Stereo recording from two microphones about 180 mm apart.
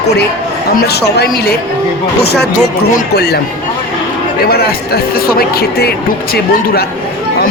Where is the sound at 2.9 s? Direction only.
60° left (ahead or behind).